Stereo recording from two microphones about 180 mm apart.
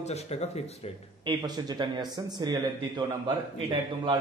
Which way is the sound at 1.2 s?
25° right (ahead or behind).